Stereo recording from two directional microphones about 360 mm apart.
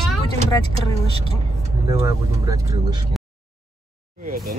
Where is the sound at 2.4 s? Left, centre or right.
Centre.